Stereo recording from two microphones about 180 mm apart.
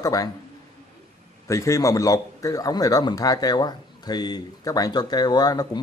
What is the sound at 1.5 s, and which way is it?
A man's voice, 15° left (ahead or behind).